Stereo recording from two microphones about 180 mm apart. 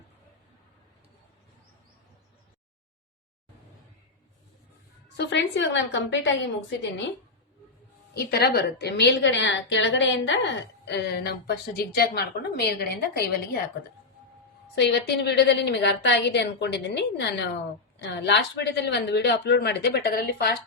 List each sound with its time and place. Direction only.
5.1 s a woman's voice: 75° left (ahead or behind)
8.1 s a woman's voice: 65° left (ahead or behind)
14.8 s a woman's voice: 70° left (ahead or behind)